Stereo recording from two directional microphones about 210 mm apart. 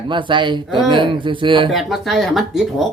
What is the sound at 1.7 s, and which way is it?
Speech, centre (ahead or behind).